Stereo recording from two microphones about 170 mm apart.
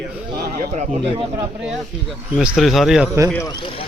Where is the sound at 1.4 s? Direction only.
5° right (ahead or behind).